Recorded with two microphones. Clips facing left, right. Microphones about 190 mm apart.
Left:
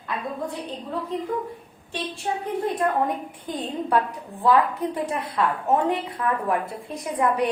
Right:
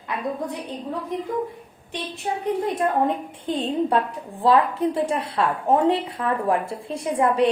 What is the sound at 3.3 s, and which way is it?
A woman's voice, 25° right (ahead or behind).